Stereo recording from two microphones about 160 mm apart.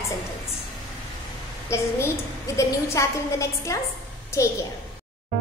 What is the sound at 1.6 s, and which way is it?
A woman's voice, 15° left (ahead or behind).